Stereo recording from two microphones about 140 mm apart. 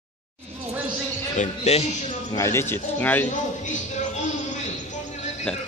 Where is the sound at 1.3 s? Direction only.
55° left (ahead or behind).